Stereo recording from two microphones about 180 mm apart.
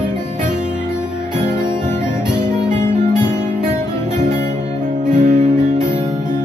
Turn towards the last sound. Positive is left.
turn(degrees=-45)  # may be behind; listen again after turning